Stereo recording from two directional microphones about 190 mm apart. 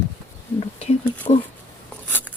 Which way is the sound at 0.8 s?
35° left (ahead or behind).